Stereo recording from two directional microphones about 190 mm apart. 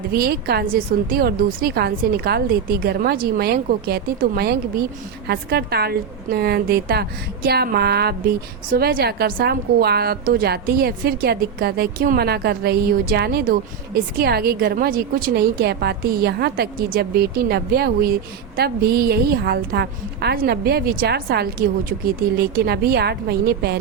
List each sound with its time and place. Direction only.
0.1 s a woman's voice: 55° right (ahead or behind)